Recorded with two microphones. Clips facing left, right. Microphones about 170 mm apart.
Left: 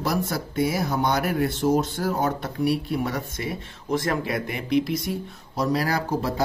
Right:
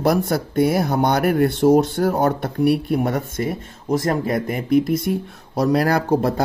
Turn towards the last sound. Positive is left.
turn(degrees=-60)  # may be behind; listen again after turning